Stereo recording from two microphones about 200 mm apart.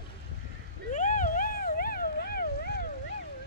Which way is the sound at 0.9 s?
40° left (ahead or behind).